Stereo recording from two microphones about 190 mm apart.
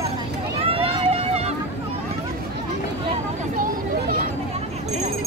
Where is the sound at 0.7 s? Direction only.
30° right (ahead or behind).